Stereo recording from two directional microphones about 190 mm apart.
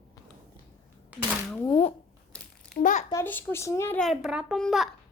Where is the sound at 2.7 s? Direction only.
40° left (ahead or behind).